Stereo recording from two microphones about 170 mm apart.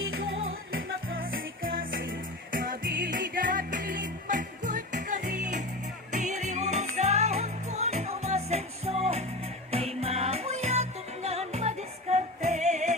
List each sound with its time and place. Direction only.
1.2 s music: 60° right (ahead or behind); by 13.0 s 40° right (ahead or behind)